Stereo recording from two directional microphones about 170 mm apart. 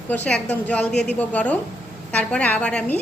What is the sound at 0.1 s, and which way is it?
A woman's voice, 10° left (ahead or behind).